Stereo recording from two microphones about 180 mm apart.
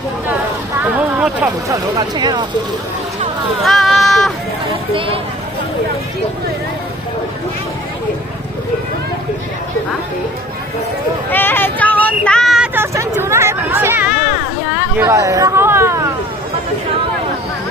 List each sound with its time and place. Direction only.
0.8 s a sound: 10° right (ahead or behind)
1.7 s speech: 25° right (ahead or behind)
3.6 s a sound: centre (ahead or behind)
4.9 s speech: 30° right (ahead or behind)
11.3 s vehicle: 10° left (ahead or behind); by 14.3 s 5° right (ahead or behind)
14.8 s hubbub: 15° right (ahead or behind)